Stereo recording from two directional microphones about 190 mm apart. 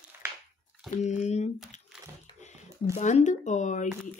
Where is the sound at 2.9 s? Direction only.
40° left (ahead or behind).